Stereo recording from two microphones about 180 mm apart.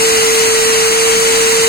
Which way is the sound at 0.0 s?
60° left (ahead or behind).